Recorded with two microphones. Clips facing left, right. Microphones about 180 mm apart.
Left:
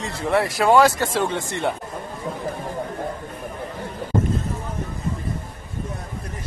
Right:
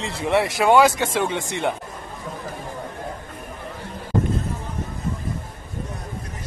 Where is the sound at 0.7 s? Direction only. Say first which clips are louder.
Even; centre (ahead or behind).